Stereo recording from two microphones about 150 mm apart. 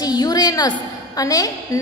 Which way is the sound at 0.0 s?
25° left (ahead or behind).